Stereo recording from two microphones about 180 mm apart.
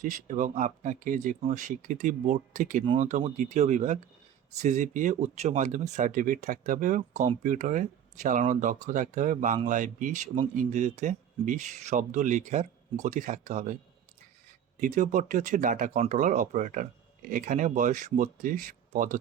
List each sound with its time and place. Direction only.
0.0 s speech: 45° right (ahead or behind)
14.8 s speech: 45° right (ahead or behind)